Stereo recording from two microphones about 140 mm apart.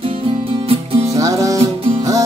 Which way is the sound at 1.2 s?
25° right (ahead or behind).